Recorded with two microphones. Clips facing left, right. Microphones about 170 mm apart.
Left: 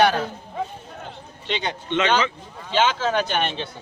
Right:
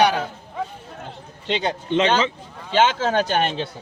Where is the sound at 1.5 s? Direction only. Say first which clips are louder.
Right 4 dB; 35° right (ahead or behind).